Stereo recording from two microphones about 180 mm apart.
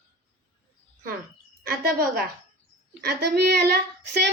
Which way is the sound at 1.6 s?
55° right (ahead or behind).